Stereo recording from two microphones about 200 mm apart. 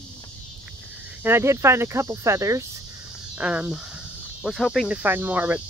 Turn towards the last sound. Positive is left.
turn(degrees=-10)  # may be behind; listen again after turning